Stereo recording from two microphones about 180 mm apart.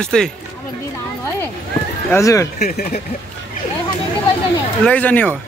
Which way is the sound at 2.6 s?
55° left (ahead or behind).